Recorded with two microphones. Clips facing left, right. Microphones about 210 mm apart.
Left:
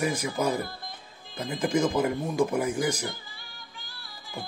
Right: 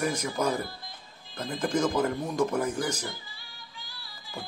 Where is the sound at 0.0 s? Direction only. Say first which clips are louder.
Left 1 dB; 10° left (ahead or behind).